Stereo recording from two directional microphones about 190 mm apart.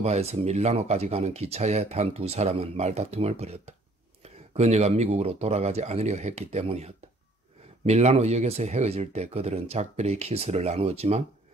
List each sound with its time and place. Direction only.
0.0 s speech: 35° right (ahead or behind)